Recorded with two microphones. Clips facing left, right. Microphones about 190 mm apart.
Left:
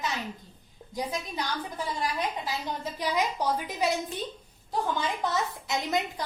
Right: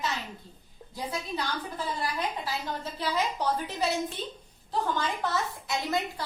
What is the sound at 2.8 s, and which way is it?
A woman's voice, 15° left (ahead or behind).